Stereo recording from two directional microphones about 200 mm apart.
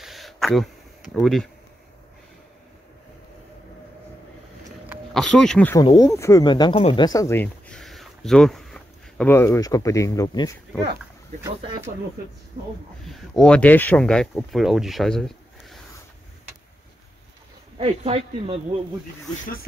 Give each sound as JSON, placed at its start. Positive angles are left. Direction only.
{"t": 0.0, "sound": "a sound", "side_deg": 0}
{"t": 1.1, "sound": "speech", "side_deg": 0}
{"t": 5.1, "sound": "speech", "side_deg": 0}
{"t": 5.8, "sound": "speech", "side_deg": 15}
{"t": 13.0, "sound": "speech", "side_deg": 0}
{"t": 17.7, "sound": "speech", "side_deg": -30}